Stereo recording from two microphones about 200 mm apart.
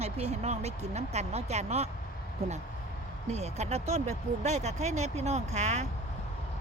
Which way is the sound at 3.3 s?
35° right (ahead or behind).